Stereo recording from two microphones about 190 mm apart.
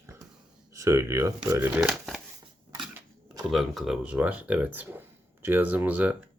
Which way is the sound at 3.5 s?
Centre (ahead or behind).